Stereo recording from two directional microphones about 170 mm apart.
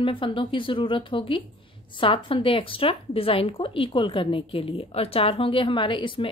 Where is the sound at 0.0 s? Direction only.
30° left (ahead or behind).